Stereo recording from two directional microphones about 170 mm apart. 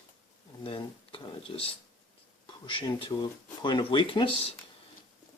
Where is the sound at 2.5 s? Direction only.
30° left (ahead or behind).